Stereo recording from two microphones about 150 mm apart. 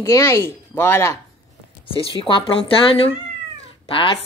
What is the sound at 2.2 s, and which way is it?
Speech, 35° left (ahead or behind).